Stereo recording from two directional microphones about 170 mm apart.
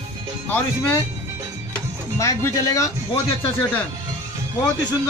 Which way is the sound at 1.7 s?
15° left (ahead or behind).